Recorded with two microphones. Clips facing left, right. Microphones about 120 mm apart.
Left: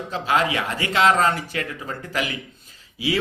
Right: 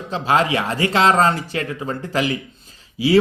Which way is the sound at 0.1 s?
30° right (ahead or behind).